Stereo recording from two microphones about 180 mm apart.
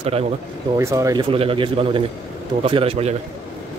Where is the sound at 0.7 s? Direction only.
15° right (ahead or behind).